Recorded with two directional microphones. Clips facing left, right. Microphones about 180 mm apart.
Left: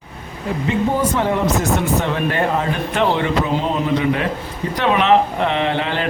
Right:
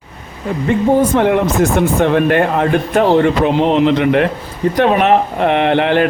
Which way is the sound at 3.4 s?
75° right (ahead or behind).